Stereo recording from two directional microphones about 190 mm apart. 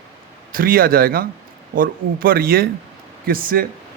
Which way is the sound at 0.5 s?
50° right (ahead or behind).